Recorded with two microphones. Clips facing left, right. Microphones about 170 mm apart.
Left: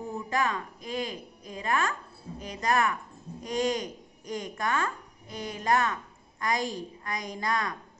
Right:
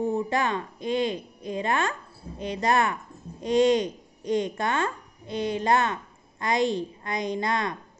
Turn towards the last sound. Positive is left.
turn(degrees=-25)  # may be behind; listen again after turning